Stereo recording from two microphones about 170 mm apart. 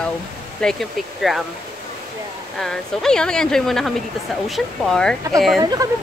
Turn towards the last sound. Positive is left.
turn(degrees=-20)  # may be behind; listen again after turning